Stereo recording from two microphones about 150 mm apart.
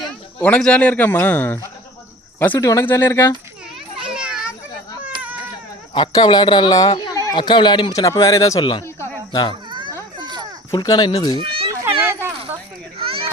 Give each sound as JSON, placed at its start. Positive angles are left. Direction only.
{"t": 0.3, "sound": "a man's voice", "side_deg": 5}
{"t": 4.0, "sound": "children playing", "side_deg": -5}
{"t": 5.9, "sound": "speech", "side_deg": 30}
{"t": 9.0, "sound": "cricket", "side_deg": 30}
{"t": 9.6, "sound": "children playing", "side_deg": -30}
{"t": 10.7, "sound": "speech", "side_deg": 30}
{"t": 11.3, "sound": "children playing", "side_deg": -35}